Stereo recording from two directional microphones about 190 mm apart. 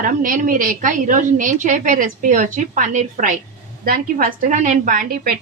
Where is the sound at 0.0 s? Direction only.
45° right (ahead or behind).